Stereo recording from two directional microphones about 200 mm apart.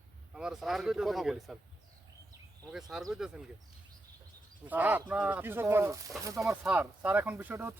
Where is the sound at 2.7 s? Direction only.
Centre (ahead or behind).